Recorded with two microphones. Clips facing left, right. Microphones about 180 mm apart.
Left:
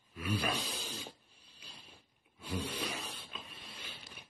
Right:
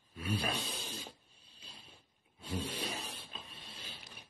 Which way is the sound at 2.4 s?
25° right (ahead or behind).